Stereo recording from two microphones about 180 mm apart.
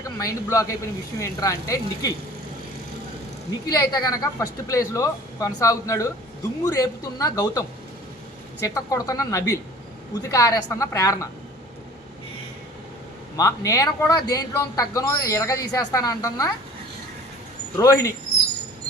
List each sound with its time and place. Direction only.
0.2 s a man's voice: 20° left (ahead or behind)
3.8 s a man's voice: 20° left (ahead or behind)
8.6 s a man's voice: 20° left (ahead or behind)
13.3 s a man's voice: 15° left (ahead or behind)
17.7 s a man's voice: 20° left (ahead or behind)